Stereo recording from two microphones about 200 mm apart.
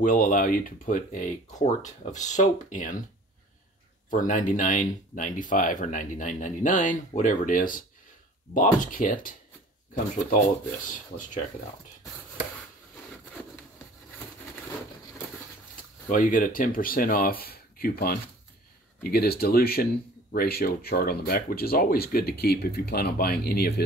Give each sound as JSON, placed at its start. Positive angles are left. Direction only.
{"t": 0.0, "sound": "speech", "side_deg": 45}
{"t": 4.1, "sound": "speech", "side_deg": 40}
{"t": 10.9, "sound": "speech", "side_deg": 40}
{"t": 16.1, "sound": "speech", "side_deg": 40}